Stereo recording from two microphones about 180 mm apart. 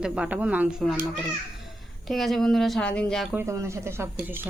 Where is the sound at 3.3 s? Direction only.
15° right (ahead or behind).